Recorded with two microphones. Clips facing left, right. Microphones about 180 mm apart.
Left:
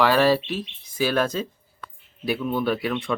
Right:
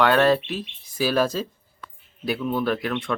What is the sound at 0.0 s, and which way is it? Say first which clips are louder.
Speech: even; 5° left (ahead or behind).